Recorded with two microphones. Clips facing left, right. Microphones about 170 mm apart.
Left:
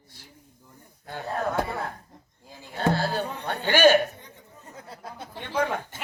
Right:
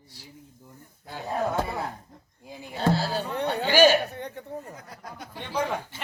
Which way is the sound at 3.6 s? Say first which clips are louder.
Left 1 dB; 55° left (ahead or behind).